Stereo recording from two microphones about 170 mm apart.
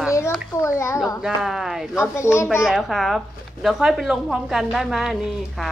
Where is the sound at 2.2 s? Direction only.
15° left (ahead or behind).